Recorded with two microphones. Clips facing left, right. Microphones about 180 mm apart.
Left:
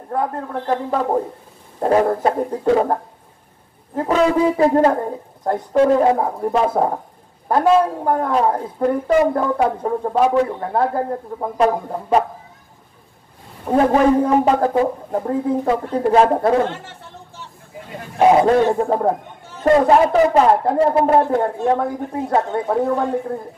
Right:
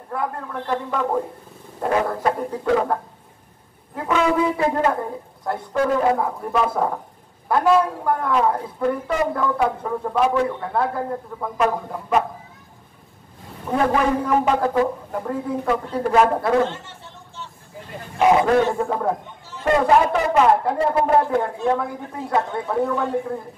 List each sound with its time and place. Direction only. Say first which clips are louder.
0.1 s a woman's voice: left 5 dB; 40° left (ahead or behind)
3.9 s a woman's voice: left 4 dB; 40° left (ahead or behind)
13.7 s a woman's voice: left 5 dB; 35° left (ahead or behind)
18.2 s a woman's voice: left 3 dB; 30° left (ahead or behind)